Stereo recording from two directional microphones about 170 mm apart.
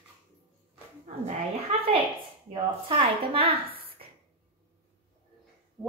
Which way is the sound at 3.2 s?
35° right (ahead or behind).